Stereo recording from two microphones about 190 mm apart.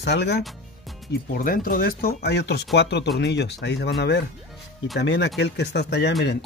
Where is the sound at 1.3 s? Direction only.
50° left (ahead or behind).